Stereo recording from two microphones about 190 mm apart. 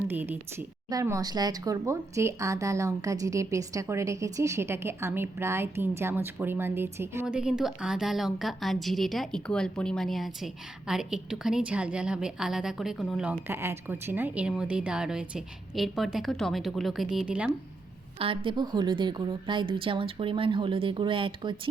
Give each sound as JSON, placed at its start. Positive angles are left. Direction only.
{"t": 0.1, "sound": "a woman's voice", "side_deg": -10}
{"t": 18.2, "sound": "a woman's voice", "side_deg": -30}